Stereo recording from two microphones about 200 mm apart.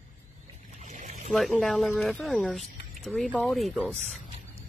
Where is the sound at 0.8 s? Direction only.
40° right (ahead or behind).